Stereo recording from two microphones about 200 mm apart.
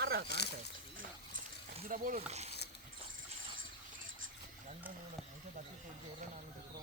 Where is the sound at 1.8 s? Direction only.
45° right (ahead or behind).